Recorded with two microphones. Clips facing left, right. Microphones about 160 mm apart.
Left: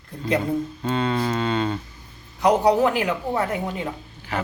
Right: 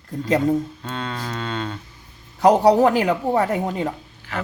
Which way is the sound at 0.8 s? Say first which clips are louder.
Left 6 dB; 15° left (ahead or behind).